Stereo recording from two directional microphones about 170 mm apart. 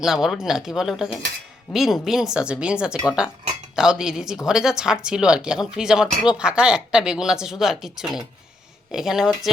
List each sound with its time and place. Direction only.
0.0 s speech: centre (ahead or behind)